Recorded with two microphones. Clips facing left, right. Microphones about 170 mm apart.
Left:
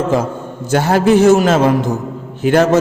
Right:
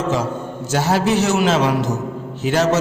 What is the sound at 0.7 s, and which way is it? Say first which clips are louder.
A man's voice: left 6 dB; 55° left (ahead or behind).